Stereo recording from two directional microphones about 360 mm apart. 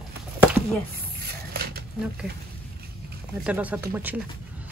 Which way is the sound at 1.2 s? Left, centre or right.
Right.